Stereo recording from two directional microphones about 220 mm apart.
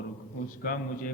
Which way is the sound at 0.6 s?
40° left (ahead or behind).